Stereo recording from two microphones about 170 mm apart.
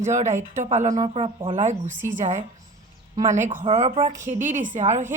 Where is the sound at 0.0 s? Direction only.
45° right (ahead or behind).